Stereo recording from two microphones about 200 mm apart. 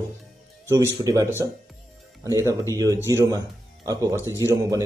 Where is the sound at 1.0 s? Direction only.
15° right (ahead or behind).